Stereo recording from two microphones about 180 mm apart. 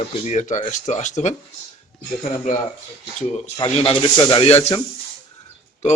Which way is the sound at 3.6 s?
25° left (ahead or behind).